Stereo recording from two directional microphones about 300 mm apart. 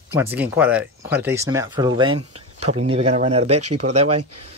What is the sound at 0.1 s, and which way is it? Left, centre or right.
Speech, centre.